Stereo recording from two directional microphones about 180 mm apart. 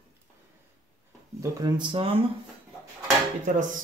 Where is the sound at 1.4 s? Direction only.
25° right (ahead or behind).